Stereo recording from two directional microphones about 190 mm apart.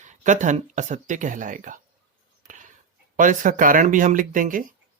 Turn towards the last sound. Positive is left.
turn(degrees=-45)  # may be behind; listen again after turning